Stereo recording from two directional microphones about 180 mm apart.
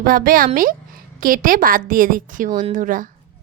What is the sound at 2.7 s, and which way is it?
Speech, 50° right (ahead or behind).